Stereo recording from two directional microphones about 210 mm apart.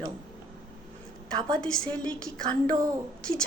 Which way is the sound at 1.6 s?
5° left (ahead or behind).